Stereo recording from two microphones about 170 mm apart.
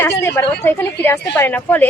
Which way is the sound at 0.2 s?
15° left (ahead or behind).